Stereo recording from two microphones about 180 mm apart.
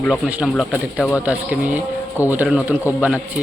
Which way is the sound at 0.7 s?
10° left (ahead or behind).